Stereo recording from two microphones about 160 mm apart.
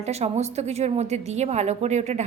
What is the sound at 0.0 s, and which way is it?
A woman's voice, 45° right (ahead or behind).